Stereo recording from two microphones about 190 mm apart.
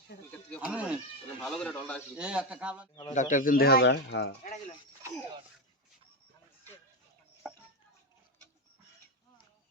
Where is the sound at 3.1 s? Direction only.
40° left (ahead or behind); by 4.3 s 65° left (ahead or behind).